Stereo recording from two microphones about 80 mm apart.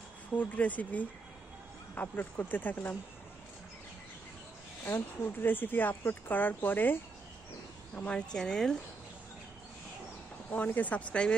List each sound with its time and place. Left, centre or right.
0.4 s speech: centre
4.8 s speech: left
8.1 s speech: centre
10.5 s speech: centre